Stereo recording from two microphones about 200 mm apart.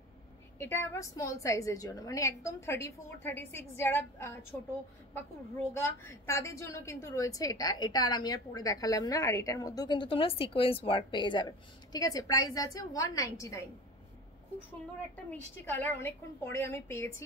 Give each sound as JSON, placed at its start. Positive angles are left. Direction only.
{"t": 0.6, "sound": "a woman's voice", "side_deg": 15}
{"t": 5.7, "sound": "a woman's voice", "side_deg": 10}
{"t": 15.5, "sound": "a woman's voice", "side_deg": 10}